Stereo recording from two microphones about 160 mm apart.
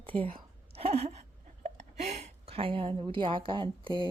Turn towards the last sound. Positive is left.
turn(degrees=-30)  # may be behind; listen again after turning